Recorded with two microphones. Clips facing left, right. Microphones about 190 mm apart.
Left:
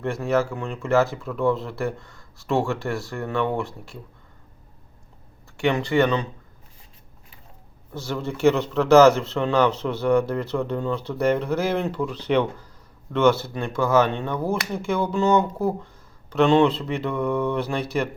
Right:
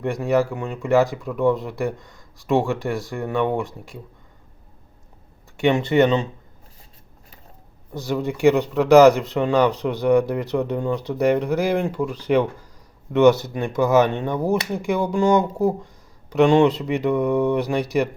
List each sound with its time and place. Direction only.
0.0 s speech: 15° right (ahead or behind)
5.5 s speech: 20° right (ahead or behind)
7.9 s speech: 15° right (ahead or behind)